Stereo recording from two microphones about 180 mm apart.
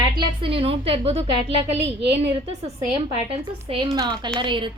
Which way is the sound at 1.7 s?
75° right (ahead or behind).